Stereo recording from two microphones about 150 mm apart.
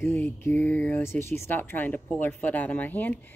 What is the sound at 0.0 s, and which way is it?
Speech, 15° left (ahead or behind).